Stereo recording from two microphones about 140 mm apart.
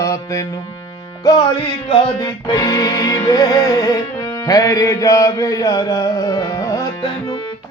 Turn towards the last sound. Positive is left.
turn(degrees=25)  # may be behind; listen again after turning